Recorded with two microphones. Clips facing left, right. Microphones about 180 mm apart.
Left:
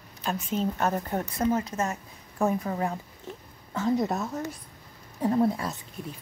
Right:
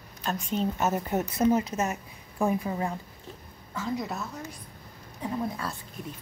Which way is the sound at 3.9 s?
45° left (ahead or behind).